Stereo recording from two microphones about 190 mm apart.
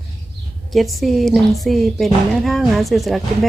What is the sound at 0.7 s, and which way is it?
A woman's voice, centre (ahead or behind).